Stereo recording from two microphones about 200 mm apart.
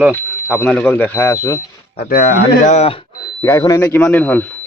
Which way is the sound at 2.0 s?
45° left (ahead or behind).